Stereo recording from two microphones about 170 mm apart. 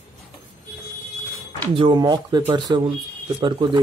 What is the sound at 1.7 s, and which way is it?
Speech, 25° right (ahead or behind).